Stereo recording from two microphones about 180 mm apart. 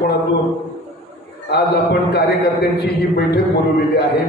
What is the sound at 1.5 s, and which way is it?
Speech, 65° left (ahead or behind).